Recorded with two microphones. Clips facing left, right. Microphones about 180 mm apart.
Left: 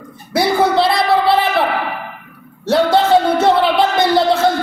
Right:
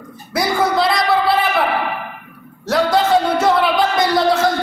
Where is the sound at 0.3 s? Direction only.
30° left (ahead or behind).